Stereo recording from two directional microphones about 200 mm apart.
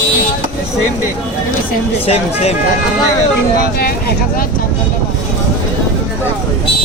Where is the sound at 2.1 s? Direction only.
30° left (ahead or behind).